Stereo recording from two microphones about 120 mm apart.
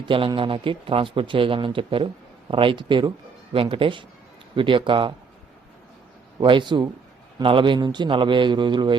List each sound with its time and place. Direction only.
0.0 s speech: 45° right (ahead or behind)
6.4 s a man's voice: 40° right (ahead or behind)